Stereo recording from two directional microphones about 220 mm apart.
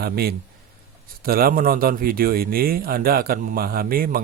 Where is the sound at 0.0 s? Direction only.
45° right (ahead or behind).